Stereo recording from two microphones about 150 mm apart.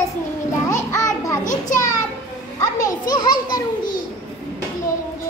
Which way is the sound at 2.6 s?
25° left (ahead or behind).